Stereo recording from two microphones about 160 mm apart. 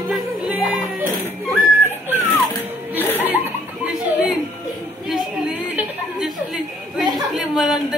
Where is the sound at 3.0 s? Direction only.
10° left (ahead or behind).